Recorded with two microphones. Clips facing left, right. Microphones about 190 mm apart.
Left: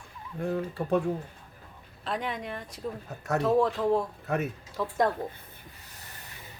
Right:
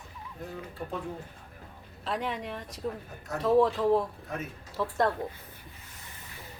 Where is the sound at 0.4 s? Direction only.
75° left (ahead or behind).